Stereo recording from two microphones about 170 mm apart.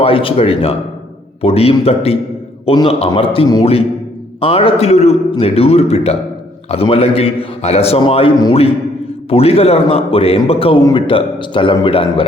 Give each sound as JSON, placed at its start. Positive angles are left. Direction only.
{"t": 0.0, "sound": "a man's voice", "side_deg": 30}